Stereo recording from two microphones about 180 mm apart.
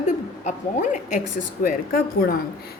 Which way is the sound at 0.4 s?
45° left (ahead or behind).